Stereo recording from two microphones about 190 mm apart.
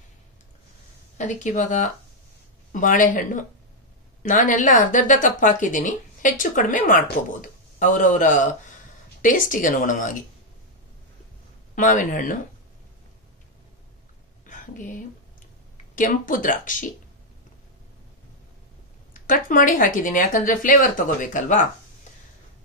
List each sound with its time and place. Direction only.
1.1 s a woman's voice: 40° left (ahead or behind)
11.7 s speech: 45° left (ahead or behind)
14.4 s a sound: 45° left (ahead or behind)
15.9 s speech: 45° left (ahead or behind)
19.1 s speech: 45° left (ahead or behind)